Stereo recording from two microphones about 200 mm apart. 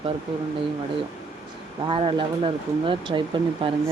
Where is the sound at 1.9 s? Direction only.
25° right (ahead or behind).